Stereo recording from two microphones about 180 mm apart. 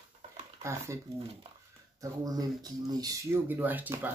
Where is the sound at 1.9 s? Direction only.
20° right (ahead or behind).